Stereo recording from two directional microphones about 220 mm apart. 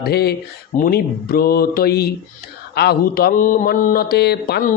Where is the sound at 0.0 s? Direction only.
45° left (ahead or behind).